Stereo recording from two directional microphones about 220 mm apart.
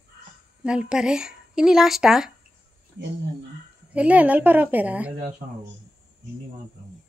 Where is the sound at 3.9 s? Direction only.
5° right (ahead or behind).